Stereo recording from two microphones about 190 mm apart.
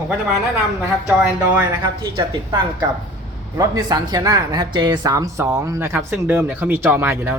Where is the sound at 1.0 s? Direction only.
10° right (ahead or behind).